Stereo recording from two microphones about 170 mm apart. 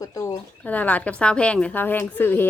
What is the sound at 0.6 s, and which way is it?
A woman's voice, 10° left (ahead or behind).